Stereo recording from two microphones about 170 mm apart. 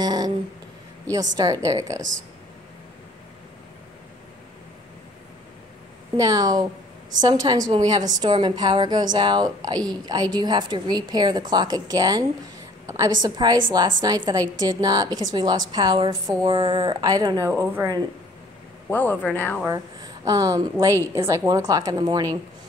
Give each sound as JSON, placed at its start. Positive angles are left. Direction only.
{"t": 0.0, "sound": "a sound", "side_deg": -25}
{"t": 1.3, "sound": "a woman's voice", "side_deg": -20}
{"t": 6.1, "sound": "a woman's voice", "side_deg": -20}
{"t": 18.9, "sound": "speech", "side_deg": 10}
{"t": 19.7, "sound": "a woman's voice", "side_deg": -20}